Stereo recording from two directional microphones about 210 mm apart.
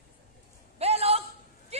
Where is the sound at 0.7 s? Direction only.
30° right (ahead or behind).